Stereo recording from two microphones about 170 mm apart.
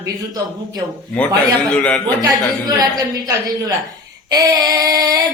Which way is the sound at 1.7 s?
5° left (ahead or behind).